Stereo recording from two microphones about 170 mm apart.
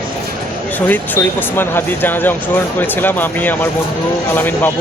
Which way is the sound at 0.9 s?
10° left (ahead or behind).